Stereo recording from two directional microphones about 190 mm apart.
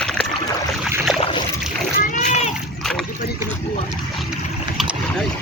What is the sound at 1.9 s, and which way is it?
Speech, 40° left (ahead or behind).